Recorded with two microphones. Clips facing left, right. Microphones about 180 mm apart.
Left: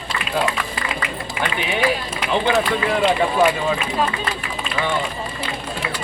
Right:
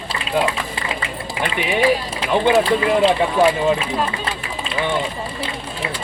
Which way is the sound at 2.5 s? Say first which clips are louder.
Right 4 dB; 30° right (ahead or behind).